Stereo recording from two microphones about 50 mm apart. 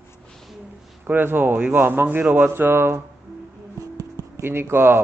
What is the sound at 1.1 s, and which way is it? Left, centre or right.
Speech, right.